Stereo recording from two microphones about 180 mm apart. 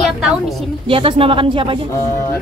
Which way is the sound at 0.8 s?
30° right (ahead or behind).